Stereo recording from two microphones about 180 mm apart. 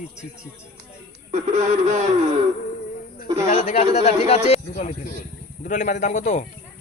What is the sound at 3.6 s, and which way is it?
Speech, 40° left (ahead or behind).